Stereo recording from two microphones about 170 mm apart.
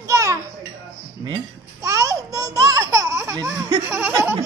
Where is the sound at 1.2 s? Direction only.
25° right (ahead or behind).